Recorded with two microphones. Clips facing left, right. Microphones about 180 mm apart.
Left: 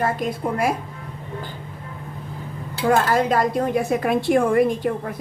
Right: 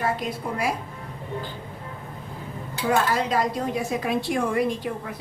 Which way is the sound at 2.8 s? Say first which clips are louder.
Left 5 dB; 50° left (ahead or behind).